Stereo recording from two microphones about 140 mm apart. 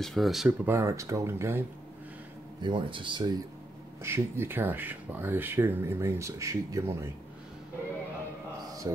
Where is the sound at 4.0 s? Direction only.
20° right (ahead or behind).